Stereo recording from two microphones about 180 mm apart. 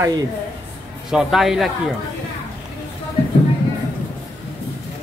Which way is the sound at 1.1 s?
Centre (ahead or behind).